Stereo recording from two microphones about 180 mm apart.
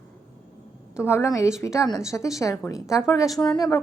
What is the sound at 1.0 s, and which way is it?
A woman's voice, 15° left (ahead or behind).